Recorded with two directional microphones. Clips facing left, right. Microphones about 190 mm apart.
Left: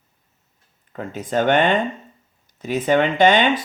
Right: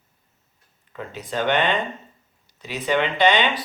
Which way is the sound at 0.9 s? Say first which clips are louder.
Left 6 dB; 50° left (ahead or behind).